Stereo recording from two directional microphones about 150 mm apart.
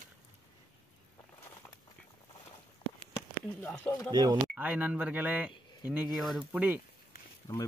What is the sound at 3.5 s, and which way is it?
Speech, 15° left (ahead or behind).